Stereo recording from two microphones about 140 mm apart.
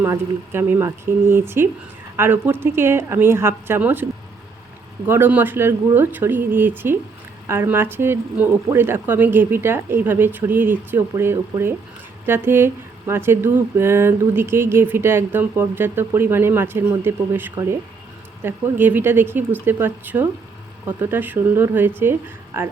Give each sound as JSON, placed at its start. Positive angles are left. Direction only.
{"t": 0.0, "sound": "speech", "side_deg": -20}
{"t": 5.0, "sound": "speech", "side_deg": -15}